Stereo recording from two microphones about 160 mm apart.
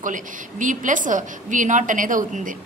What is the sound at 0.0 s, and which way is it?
A woman's voice, 55° right (ahead or behind).